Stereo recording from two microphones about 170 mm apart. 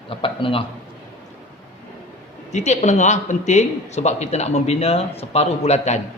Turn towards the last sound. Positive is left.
turn(degrees=40)  # may be behind; listen again after turning